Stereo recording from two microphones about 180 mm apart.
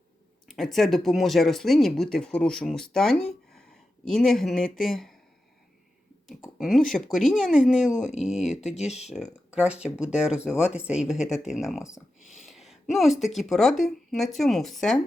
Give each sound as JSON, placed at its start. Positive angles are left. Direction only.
{"t": 0.4, "sound": "speech", "side_deg": 0}
{"t": 6.2, "sound": "speech", "side_deg": 0}
{"t": 7.9, "sound": "speech", "side_deg": 40}
{"t": 9.1, "sound": "speech", "side_deg": -5}
{"t": 11.8, "sound": "speech", "side_deg": 15}
{"t": 12.2, "sound": "speech", "side_deg": 0}